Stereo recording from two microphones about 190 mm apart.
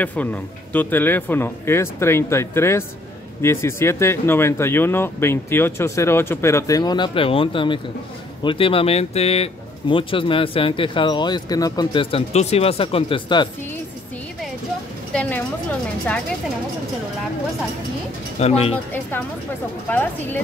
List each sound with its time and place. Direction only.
0.0 s speech: 10° left (ahead or behind); by 13.5 s 25° left (ahead or behind)
15.1 s a sound: 10° left (ahead or behind)
18.4 s speech: 35° left (ahead or behind)
19.9 s speech: 10° left (ahead or behind)